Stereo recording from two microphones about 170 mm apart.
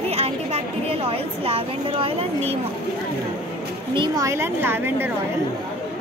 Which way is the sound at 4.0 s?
20° right (ahead or behind).